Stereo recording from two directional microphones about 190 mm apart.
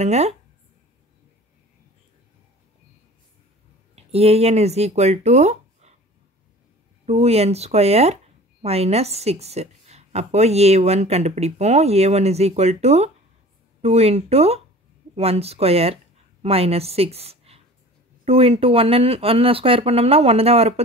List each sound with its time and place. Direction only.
0.0 s a woman's voice: 35° right (ahead or behind)
3.9 s speech: 35° right (ahead or behind)
7.1 s a woman's voice: 35° right (ahead or behind)